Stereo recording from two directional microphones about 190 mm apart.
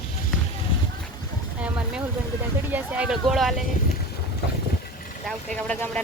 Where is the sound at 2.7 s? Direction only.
10° right (ahead or behind).